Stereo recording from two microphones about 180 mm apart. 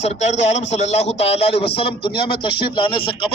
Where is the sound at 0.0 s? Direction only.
40° left (ahead or behind).